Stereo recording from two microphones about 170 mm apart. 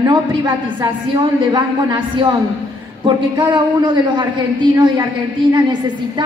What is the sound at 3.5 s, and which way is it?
A woman's voice, 30° right (ahead or behind).